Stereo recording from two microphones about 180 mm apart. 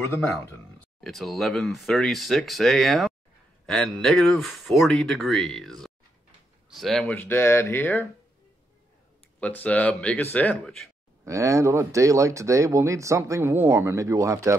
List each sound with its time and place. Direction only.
1.0 s a man's voice: centre (ahead or behind)
9.4 s a man's voice: 10° left (ahead or behind)
11.2 s speech: 15° right (ahead or behind)